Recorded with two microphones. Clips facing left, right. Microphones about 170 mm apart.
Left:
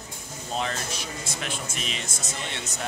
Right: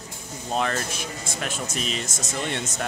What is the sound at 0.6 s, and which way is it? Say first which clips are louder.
Speech: right 4 dB; 55° right (ahead or behind).